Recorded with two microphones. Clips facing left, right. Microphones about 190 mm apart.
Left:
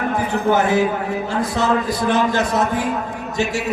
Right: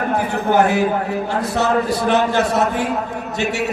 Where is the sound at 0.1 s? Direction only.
60° right (ahead or behind).